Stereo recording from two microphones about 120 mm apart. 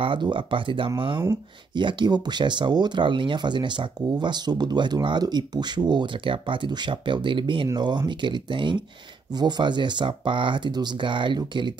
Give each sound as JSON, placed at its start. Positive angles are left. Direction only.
{"t": 0.0, "sound": "speech", "side_deg": -45}